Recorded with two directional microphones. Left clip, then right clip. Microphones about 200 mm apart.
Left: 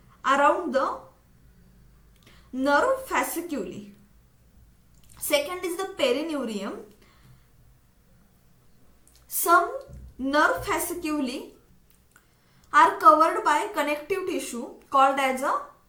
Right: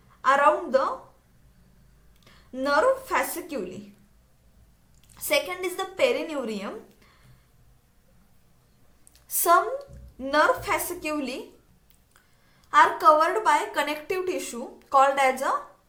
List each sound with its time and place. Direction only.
0.2 s a sound: 45° right (ahead or behind)
2.2 s a woman's voice: 45° right (ahead or behind)
5.1 s a woman's voice: 45° right (ahead or behind)
9.1 s a woman's voice: 50° right (ahead or behind)
12.7 s a woman's voice: 50° right (ahead or behind)